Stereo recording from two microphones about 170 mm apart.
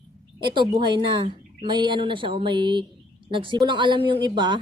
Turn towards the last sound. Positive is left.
turn(degrees=-25)  # may be behind; listen again after turning